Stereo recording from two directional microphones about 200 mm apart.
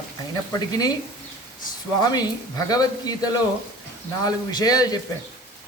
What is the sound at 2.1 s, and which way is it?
Speech, 20° left (ahead or behind).